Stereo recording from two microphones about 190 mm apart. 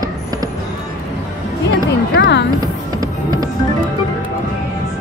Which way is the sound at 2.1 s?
60° left (ahead or behind).